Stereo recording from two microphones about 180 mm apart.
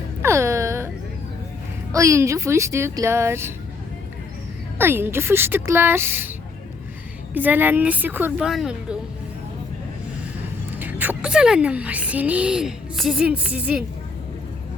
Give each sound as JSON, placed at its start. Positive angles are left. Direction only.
{"t": 0.2, "sound": "music", "side_deg": -15}
{"t": 1.9, "sound": "speech", "side_deg": -15}
{"t": 4.8, "sound": "speech", "side_deg": -10}
{"t": 7.3, "sound": "speech", "side_deg": -10}
{"t": 10.7, "sound": "a woman's voice", "side_deg": -10}